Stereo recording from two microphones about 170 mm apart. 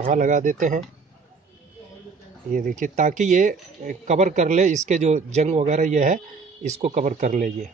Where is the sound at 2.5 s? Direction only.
50° right (ahead or behind).